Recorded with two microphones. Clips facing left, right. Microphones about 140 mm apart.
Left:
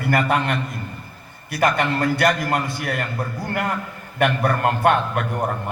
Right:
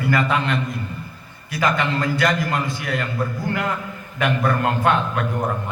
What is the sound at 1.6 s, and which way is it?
Speech, 55° left (ahead or behind).